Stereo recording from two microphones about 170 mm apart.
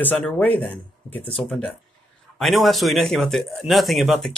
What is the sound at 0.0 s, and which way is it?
Speech, 10° left (ahead or behind).